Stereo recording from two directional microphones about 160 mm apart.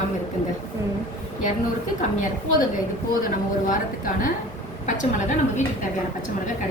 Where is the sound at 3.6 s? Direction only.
55° left (ahead or behind).